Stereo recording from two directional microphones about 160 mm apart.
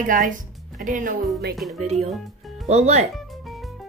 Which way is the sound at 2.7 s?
40° right (ahead or behind).